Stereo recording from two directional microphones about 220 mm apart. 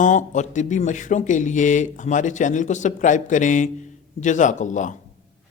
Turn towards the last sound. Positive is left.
turn(degrees=35)  # may be behind; listen again after turning